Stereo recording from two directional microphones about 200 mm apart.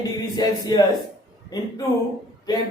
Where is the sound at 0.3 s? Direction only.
20° left (ahead or behind).